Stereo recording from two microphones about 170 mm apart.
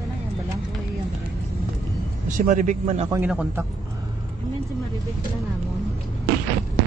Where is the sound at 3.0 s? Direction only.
15° right (ahead or behind).